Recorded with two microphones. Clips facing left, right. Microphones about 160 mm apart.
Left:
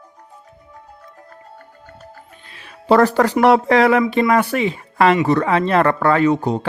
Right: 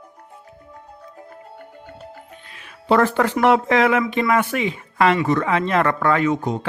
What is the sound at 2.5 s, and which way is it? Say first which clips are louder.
Speech: left 4 dB; 35° left (ahead or behind).